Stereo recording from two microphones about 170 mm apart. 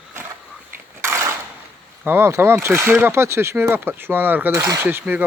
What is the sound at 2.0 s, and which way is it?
Speech, 15° right (ahead or behind).